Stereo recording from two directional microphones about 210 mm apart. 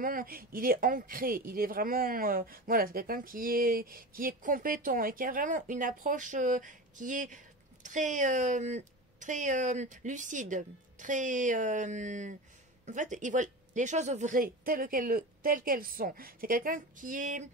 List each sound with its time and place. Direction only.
0.0 s speech: 40° right (ahead or behind)